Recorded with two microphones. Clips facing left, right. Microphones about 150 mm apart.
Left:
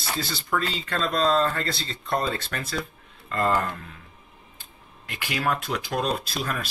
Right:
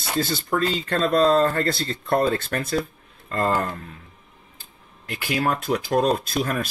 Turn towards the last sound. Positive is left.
turn(degrees=-50)  # may be behind; listen again after turning